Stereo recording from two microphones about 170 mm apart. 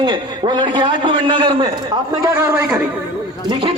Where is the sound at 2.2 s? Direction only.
15° right (ahead or behind).